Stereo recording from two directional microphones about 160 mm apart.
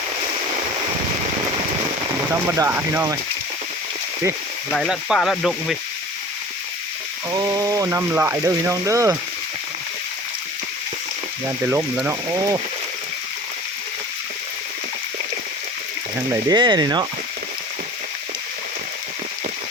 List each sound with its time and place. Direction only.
2.3 s speech: 15° right (ahead or behind)
4.7 s speech: centre (ahead or behind)
7.3 s speech: 25° right (ahead or behind)
11.4 s speech: 15° right (ahead or behind)
16.3 s speech: 25° right (ahead or behind)